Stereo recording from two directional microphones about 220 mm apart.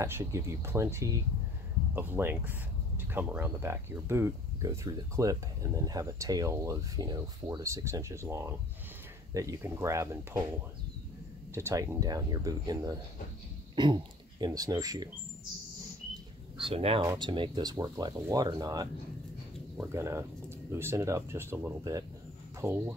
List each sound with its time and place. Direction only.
0.0 s speech: 15° right (ahead or behind)
11.5 s speech: 15° right (ahead or behind)
16.5 s speech: 25° right (ahead or behind)